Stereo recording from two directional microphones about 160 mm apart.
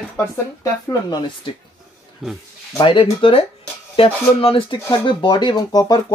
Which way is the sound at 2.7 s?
30° left (ahead or behind).